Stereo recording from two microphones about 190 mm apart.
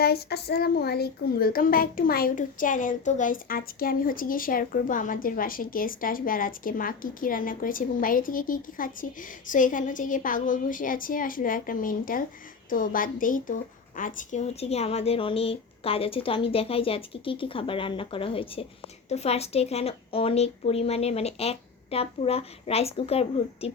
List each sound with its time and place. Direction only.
0.0 s a woman's voice: 55° left (ahead or behind); by 23.7 s 30° left (ahead or behind)